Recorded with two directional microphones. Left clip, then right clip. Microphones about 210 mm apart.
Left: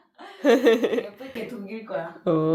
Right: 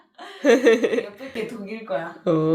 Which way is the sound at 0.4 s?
5° left (ahead or behind).